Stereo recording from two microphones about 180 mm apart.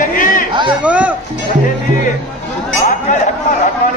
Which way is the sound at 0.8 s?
5° right (ahead or behind).